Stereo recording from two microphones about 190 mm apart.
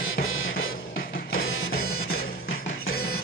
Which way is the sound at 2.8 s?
55° left (ahead or behind).